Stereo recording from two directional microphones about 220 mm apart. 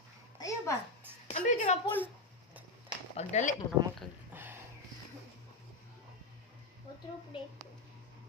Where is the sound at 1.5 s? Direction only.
30° left (ahead or behind).